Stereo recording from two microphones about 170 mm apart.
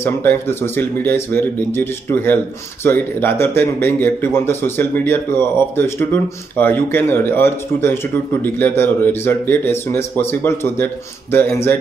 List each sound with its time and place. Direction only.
0.0 s speech: 15° left (ahead or behind)